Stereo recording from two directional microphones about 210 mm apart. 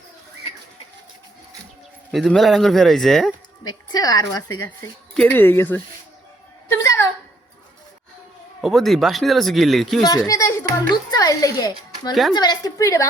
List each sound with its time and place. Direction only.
2.1 s speech: centre (ahead or behind)
3.7 s speech: 20° left (ahead or behind)
6.7 s a sound: 15° left (ahead or behind)
8.6 s speech: centre (ahead or behind)
10.0 s speech: 20° left (ahead or behind)